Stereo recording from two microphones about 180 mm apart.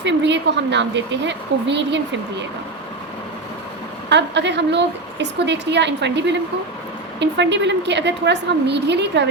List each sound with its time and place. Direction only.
0.0 s a woman's voice: 75° right (ahead or behind)
4.1 s a woman's voice: 75° right (ahead or behind)